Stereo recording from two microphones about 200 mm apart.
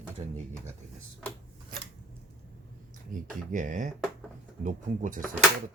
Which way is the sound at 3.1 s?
40° right (ahead or behind).